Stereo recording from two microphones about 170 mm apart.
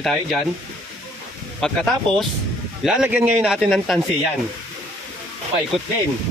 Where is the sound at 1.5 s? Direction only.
5° left (ahead or behind).